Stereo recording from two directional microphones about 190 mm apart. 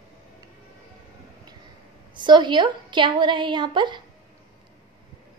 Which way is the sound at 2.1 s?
25° right (ahead or behind).